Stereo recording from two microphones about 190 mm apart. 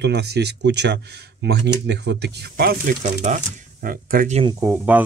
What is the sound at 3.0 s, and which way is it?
Speech, 40° right (ahead or behind).